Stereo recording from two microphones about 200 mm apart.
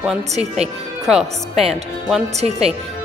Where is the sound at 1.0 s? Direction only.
Centre (ahead or behind).